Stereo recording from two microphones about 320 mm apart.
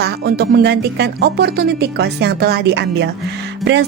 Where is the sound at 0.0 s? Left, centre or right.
Right.